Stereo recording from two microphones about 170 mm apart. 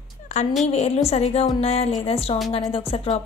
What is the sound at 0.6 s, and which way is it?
A woman's voice, 40° left (ahead or behind).